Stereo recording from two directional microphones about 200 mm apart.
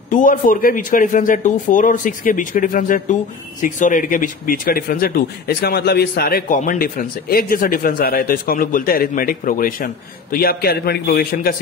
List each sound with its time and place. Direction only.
0.1 s a man's voice: 45° left (ahead or behind)